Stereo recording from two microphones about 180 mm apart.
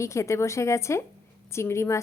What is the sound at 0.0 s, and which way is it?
A woman's voice, 15° left (ahead or behind).